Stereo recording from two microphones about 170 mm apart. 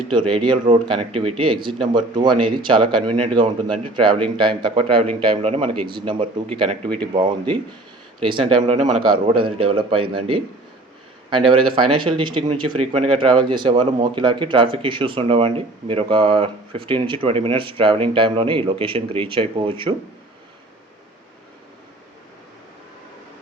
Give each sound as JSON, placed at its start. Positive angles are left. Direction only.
{"t": 0.1, "sound": "speech", "side_deg": -30}